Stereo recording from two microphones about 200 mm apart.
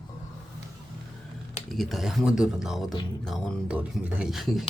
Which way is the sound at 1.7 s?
Centre (ahead or behind).